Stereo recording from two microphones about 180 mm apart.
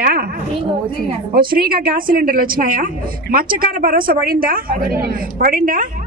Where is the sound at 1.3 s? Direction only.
55° right (ahead or behind).